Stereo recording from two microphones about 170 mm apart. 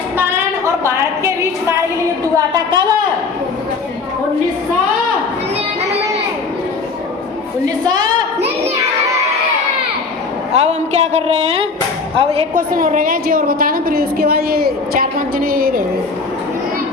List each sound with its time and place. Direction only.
0.2 s a sound: 15° right (ahead or behind)
10.5 s a man's voice: 40° right (ahead or behind)
12.5 s a woman's voice: 55° right (ahead or behind)